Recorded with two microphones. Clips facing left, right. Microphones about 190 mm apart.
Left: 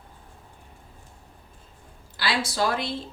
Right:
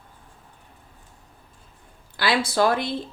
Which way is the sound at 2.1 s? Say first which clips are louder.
Right 5 dB; 55° right (ahead or behind).